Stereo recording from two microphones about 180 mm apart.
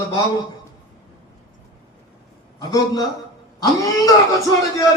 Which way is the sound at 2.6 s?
20° left (ahead or behind).